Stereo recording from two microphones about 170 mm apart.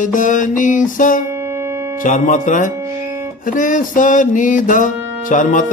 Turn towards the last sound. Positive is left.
turn(degrees=50)  # may be behind; listen again after turning